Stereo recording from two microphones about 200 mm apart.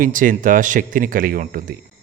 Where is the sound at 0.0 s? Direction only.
40° right (ahead or behind).